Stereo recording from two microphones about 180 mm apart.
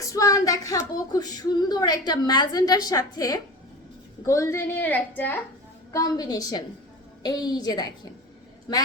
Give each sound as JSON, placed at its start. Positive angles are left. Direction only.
{"t": 0.0, "sound": "a woman's voice", "side_deg": 20}